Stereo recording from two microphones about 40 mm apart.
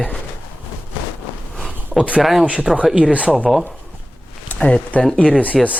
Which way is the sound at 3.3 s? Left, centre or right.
Centre.